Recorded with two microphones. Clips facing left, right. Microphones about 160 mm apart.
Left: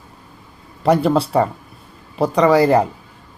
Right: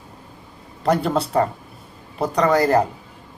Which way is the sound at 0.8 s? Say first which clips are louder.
Left 4 dB; centre (ahead or behind).